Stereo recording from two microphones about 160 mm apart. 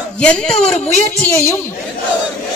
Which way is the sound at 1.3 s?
15° left (ahead or behind).